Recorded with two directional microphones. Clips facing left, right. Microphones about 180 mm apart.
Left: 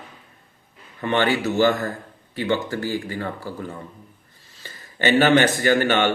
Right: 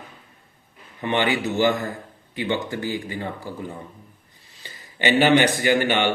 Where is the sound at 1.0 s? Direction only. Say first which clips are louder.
Left 2 dB; 15° right (ahead or behind).